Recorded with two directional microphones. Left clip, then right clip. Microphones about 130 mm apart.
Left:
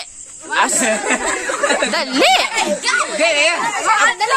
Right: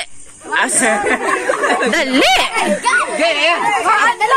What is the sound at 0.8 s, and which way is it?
Speech, 25° left (ahead or behind).